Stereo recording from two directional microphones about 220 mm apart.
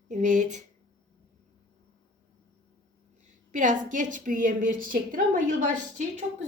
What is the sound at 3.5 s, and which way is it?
A woman's voice, 35° right (ahead or behind).